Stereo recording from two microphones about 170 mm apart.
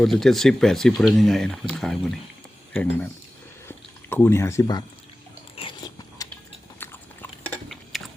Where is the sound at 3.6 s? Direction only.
15° left (ahead or behind).